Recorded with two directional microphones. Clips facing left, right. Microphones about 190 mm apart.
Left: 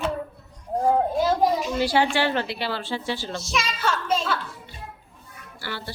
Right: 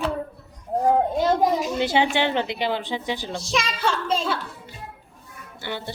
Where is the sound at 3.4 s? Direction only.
30° right (ahead or behind).